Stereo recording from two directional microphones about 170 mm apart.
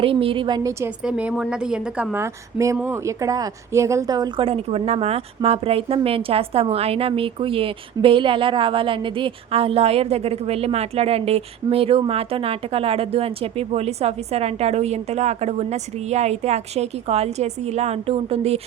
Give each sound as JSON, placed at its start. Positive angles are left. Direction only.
{"t": 0.0, "sound": "a woman's voice", "side_deg": -30}
{"t": 1.0, "sound": "a woman's voice", "side_deg": -5}